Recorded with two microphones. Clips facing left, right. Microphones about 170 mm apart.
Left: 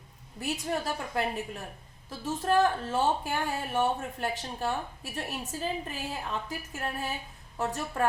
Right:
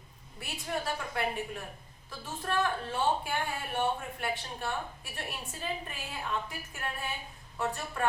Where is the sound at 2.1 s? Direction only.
40° left (ahead or behind).